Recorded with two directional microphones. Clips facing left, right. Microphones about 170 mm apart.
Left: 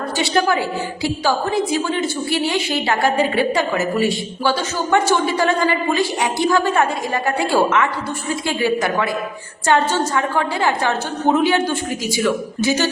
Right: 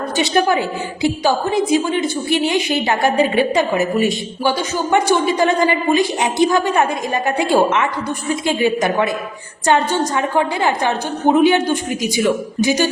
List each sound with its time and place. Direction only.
0.2 s a woman's voice: 20° right (ahead or behind)